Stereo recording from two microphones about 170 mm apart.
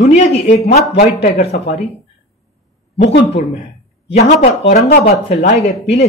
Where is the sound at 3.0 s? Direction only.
90° left.